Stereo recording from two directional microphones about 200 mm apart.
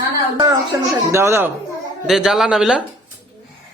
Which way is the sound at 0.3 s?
20° right (ahead or behind).